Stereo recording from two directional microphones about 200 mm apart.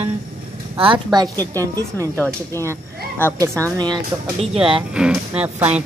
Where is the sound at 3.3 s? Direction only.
15° right (ahead or behind).